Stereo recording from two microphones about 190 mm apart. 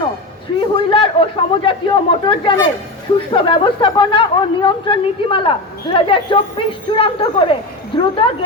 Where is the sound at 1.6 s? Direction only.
25° left (ahead or behind).